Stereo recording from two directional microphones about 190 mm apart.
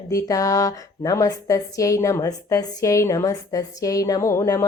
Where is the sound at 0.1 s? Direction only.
20° left (ahead or behind).